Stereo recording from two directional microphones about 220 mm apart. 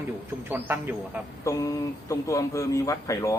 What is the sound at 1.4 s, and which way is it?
Speech, 15° left (ahead or behind).